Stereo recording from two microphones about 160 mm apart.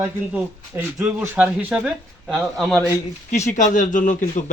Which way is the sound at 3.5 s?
50° left (ahead or behind).